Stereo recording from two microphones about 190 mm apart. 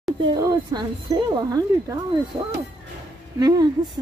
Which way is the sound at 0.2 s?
20° right (ahead or behind).